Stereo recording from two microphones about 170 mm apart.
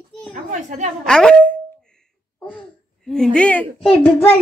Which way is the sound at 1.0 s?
5° left (ahead or behind).